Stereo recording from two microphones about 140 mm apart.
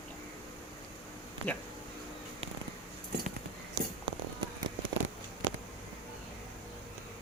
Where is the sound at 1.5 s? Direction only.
15° left (ahead or behind).